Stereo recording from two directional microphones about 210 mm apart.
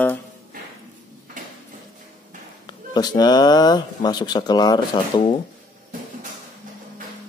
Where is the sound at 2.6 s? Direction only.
20° left (ahead or behind).